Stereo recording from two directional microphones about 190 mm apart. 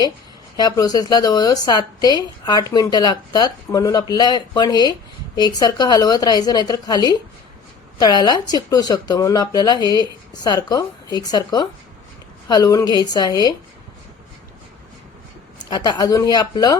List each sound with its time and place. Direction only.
0.5 s speech: 20° left (ahead or behind)
15.7 s speech: 20° left (ahead or behind)